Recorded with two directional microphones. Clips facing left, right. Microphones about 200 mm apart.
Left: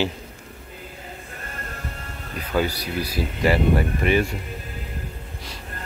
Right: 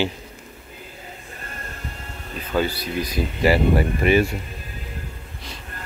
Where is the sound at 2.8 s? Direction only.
10° left (ahead or behind).